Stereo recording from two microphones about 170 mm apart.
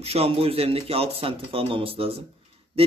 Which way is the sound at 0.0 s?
35° right (ahead or behind).